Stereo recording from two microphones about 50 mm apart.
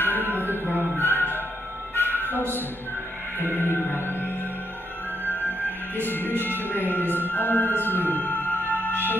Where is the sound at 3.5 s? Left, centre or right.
Left.